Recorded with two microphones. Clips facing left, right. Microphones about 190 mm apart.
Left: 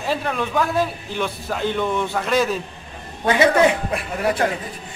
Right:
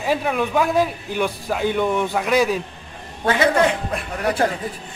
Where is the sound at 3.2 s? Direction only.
15° left (ahead or behind).